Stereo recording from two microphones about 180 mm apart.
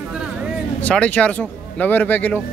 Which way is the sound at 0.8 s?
5° left (ahead or behind).